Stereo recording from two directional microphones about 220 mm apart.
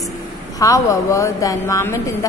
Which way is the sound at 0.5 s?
15° left (ahead or behind).